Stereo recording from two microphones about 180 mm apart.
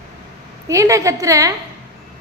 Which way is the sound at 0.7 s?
15° right (ahead or behind).